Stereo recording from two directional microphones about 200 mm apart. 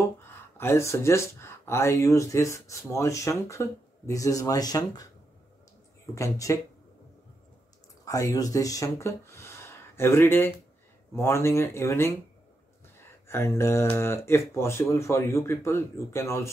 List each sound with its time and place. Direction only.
0.6 s speech: 15° left (ahead or behind)
6.1 s speech: 15° left (ahead or behind)
8.0 s speech: 15° left (ahead or behind)
13.3 s speech: 15° left (ahead or behind)